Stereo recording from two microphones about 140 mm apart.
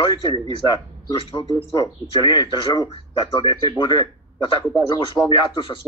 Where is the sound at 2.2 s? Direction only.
30° left (ahead or behind).